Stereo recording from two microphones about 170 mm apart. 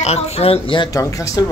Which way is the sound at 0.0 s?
40° left (ahead or behind).